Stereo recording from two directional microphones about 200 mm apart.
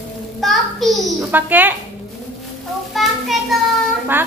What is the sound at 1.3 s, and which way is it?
Speech, 10° right (ahead or behind).